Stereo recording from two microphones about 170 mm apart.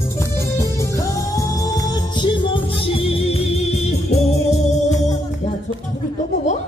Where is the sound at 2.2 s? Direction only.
30° left (ahead or behind).